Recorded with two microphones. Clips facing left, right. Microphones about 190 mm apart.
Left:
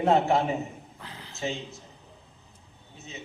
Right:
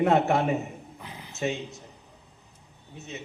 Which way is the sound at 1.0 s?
15° right (ahead or behind).